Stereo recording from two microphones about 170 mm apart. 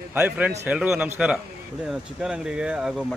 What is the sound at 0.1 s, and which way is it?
Speech, 10° right (ahead or behind).